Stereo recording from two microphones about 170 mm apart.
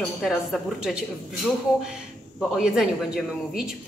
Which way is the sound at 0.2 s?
Centre (ahead or behind).